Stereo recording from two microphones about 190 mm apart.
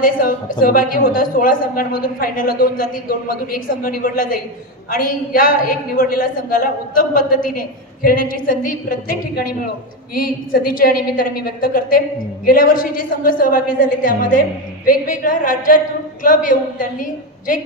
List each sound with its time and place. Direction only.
0.0 s a woman's voice: 45° left (ahead or behind)